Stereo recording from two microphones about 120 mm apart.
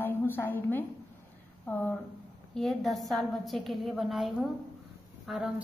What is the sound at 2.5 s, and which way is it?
A woman's voice, centre (ahead or behind).